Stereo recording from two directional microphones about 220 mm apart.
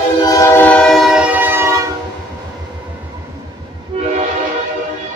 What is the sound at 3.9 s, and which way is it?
Train, 25° right (ahead or behind).